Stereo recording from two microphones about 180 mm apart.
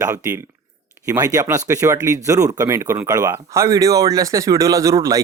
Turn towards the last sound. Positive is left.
turn(degrees=-20)  # may be behind; listen again after turning